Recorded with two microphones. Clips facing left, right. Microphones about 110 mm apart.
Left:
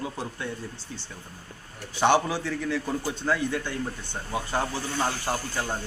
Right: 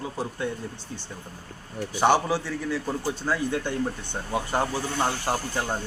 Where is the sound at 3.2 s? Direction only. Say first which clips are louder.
Even; 20° right (ahead or behind).